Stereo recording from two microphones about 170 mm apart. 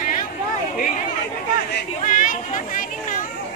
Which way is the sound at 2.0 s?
50° left (ahead or behind).